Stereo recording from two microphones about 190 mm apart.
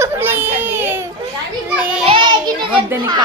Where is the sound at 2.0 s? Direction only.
25° right (ahead or behind).